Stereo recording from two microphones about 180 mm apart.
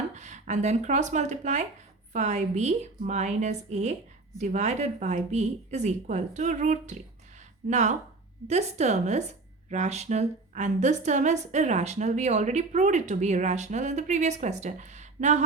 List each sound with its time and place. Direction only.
0.1 s speech: 40° right (ahead or behind)